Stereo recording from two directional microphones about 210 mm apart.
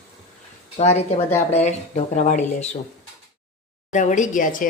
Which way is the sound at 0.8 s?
35° left (ahead or behind).